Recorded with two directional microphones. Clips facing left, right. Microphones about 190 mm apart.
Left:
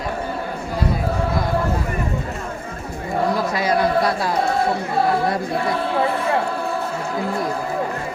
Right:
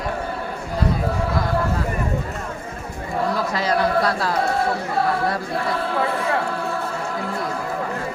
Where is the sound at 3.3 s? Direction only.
10° left (ahead or behind).